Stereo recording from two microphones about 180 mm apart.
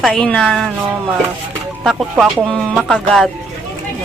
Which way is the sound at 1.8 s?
Centre (ahead or behind).